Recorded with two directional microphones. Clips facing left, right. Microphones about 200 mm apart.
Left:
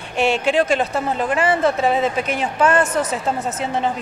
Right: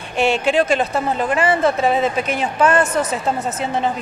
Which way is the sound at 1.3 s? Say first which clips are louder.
Right 1 dB; 20° right (ahead or behind).